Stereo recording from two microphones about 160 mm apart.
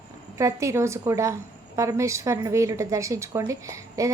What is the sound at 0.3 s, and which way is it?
A woman's voice, 20° right (ahead or behind).